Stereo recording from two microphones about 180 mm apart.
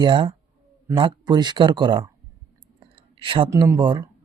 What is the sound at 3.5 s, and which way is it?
Speech, 20° right (ahead or behind).